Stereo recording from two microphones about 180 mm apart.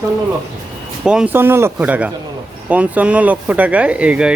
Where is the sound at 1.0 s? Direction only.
5° right (ahead or behind).